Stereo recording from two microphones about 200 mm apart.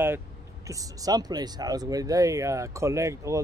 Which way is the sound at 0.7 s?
15° right (ahead or behind).